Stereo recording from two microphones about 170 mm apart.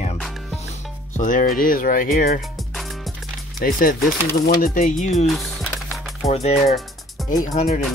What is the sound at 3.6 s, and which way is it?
Speech, 60° left (ahead or behind).